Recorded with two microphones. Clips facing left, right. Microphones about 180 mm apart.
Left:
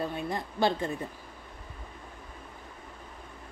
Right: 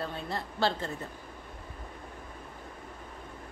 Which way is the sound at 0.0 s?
15° left (ahead or behind).